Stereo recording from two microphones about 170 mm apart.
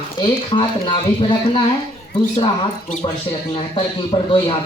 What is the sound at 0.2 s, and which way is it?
Speech, 30° left (ahead or behind).